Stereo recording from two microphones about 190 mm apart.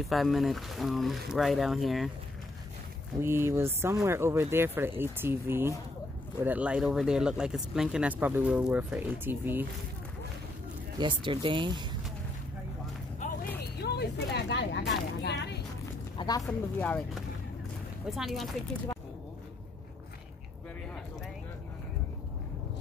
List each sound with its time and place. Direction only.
0.0 s speech: centre (ahead or behind)
3.2 s speech: 10° right (ahead or behind)
11.0 s speech: 25° right (ahead or behind)
13.7 s a sound: 60° left (ahead or behind)
15.2 s vehicle: 65° left (ahead or behind)
15.8 s a sound: 20° left (ahead or behind)
16.4 s speech: 10° left (ahead or behind)
18.1 s speech: centre (ahead or behind)